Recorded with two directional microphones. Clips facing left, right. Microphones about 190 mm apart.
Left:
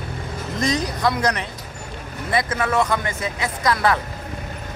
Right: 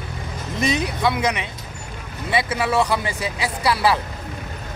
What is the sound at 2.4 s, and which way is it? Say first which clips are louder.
Speech: right 2 dB; 10° right (ahead or behind).